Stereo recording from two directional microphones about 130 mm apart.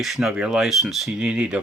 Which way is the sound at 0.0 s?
Centre (ahead or behind).